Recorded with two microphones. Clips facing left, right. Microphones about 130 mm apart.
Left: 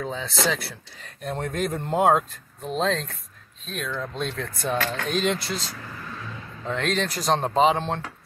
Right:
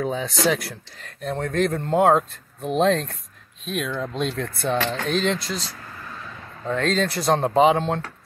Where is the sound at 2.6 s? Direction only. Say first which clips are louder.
Right 5 dB; 10° right (ahead or behind).